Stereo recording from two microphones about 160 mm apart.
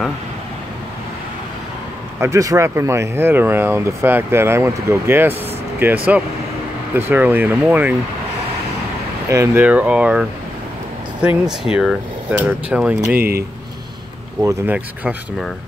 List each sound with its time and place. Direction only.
2.1 s speech: 20° right (ahead or behind)
9.3 s speech: 15° right (ahead or behind)
13.1 s speech: 70° right (ahead or behind)
14.4 s speech: 10° right (ahead or behind)